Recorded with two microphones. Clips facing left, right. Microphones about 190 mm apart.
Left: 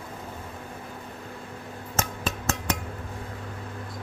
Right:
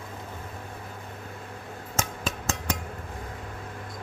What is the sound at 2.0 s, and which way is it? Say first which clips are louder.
Music: left 2 dB; 65° left (ahead or behind).